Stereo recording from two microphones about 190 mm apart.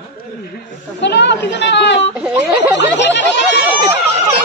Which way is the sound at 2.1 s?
5° right (ahead or behind).